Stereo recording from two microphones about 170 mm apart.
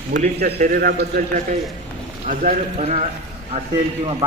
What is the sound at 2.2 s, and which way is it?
Speech, 55° right (ahead or behind).